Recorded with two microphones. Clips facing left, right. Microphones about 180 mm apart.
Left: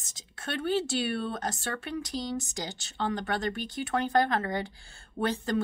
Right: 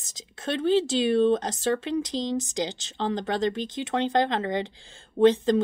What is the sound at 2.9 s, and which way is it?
A woman's voice, 25° right (ahead or behind).